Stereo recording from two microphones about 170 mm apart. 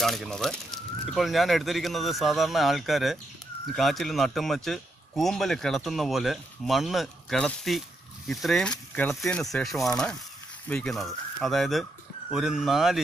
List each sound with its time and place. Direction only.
0.0 s speech: centre (ahead or behind)